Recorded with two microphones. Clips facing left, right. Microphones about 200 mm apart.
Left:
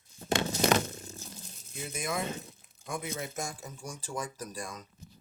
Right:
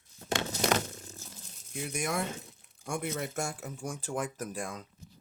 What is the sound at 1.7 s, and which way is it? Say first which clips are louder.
Speech: right 2 dB; 65° right (ahead or behind).